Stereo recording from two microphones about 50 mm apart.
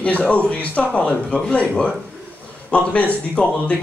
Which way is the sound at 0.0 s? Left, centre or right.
Left.